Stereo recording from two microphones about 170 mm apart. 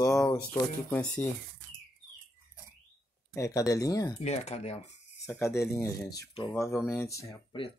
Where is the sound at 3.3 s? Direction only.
20° left (ahead or behind).